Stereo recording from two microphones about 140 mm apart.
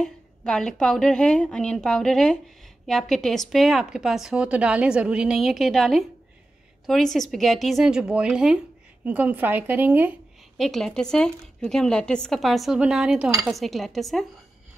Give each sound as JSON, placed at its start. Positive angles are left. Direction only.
{"t": 0.0, "sound": "a woman's voice", "side_deg": 5}
{"t": 10.6, "sound": "a woman's voice", "side_deg": 0}